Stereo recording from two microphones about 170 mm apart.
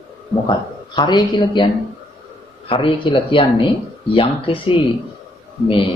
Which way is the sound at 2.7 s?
30° left (ahead or behind).